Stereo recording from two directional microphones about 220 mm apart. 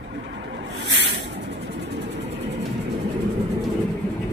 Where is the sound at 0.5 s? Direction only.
55° right (ahead or behind).